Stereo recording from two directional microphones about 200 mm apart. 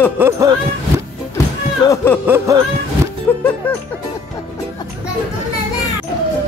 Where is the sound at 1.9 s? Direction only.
10° left (ahead or behind).